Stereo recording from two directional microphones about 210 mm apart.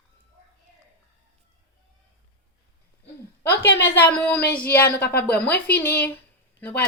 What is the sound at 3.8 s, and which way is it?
Speech, 10° left (ahead or behind).